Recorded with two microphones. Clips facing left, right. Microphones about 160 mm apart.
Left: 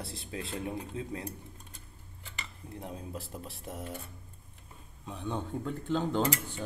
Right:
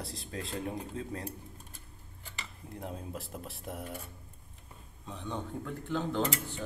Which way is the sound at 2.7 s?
Centre (ahead or behind).